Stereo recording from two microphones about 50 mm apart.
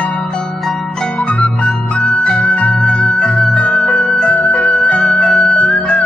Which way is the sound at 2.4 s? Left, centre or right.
Left.